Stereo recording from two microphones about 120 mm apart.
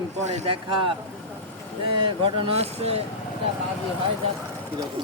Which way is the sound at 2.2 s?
55° right (ahead or behind).